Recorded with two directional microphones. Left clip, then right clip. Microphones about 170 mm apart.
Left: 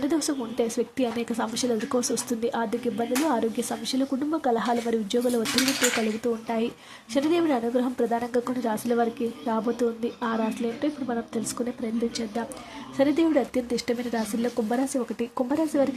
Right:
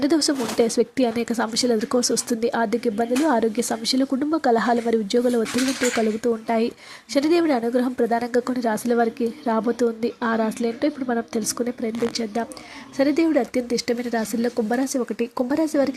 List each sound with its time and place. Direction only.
0.0 s speech: 20° right (ahead or behind)
0.6 s speech: 30° right (ahead or behind)
13.0 s speech: 20° right (ahead or behind)